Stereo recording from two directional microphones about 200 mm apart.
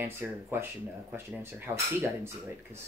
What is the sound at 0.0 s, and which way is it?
Speech, 10° right (ahead or behind).